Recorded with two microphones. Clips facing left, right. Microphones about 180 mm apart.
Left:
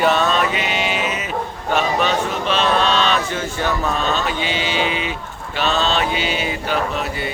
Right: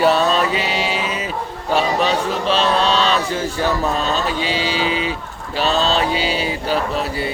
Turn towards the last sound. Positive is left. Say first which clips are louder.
# right 2 dB
turn(degrees=-35)  # may be behind; listen again after turning